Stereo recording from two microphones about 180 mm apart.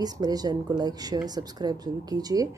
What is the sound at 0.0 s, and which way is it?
A woman's voice, 20° right (ahead or behind).